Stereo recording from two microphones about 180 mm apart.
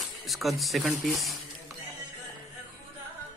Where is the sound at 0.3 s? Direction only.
Centre (ahead or behind).